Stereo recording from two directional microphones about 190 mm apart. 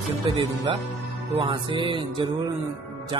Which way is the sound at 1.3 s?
25° right (ahead or behind).